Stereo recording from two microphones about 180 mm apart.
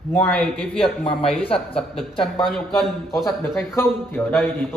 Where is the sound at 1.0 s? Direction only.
30° left (ahead or behind).